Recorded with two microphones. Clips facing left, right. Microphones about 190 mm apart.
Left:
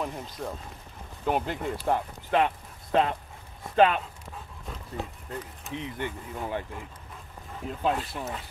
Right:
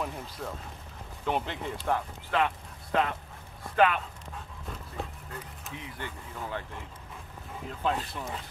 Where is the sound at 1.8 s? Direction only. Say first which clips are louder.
Left 1 dB; 20° left (ahead or behind).